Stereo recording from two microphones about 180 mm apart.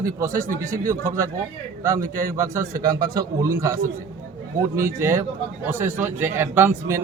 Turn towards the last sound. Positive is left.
turn(degrees=-15)  # may be behind; listen again after turning